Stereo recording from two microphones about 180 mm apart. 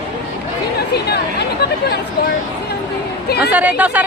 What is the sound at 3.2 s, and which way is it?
Chatter, 60° left (ahead or behind).